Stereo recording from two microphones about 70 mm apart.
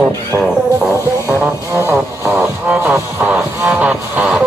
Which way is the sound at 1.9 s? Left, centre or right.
Right.